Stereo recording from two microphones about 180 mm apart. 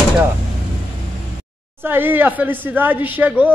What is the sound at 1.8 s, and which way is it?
Speech, 10° right (ahead or behind).